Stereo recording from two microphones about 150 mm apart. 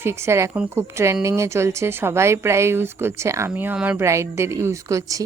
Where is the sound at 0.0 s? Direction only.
15° right (ahead or behind).